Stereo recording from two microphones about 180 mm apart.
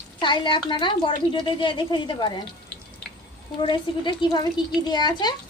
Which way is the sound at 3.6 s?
25° left (ahead or behind).